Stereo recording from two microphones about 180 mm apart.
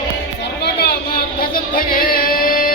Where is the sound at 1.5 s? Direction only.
55° left (ahead or behind).